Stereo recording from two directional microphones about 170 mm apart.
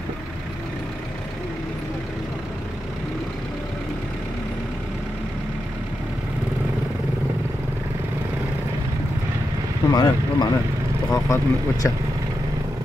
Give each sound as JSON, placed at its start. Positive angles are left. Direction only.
{"t": 9.8, "sound": "speech", "side_deg": 25}